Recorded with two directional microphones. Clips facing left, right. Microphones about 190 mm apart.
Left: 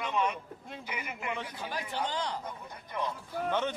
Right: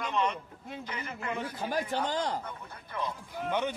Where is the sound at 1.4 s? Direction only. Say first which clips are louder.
Right 5 dB; 45° right (ahead or behind).